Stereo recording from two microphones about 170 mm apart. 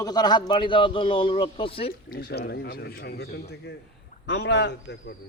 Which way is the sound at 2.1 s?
65° left (ahead or behind).